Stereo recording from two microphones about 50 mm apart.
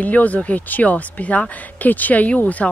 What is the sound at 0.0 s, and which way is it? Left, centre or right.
A woman's voice, left.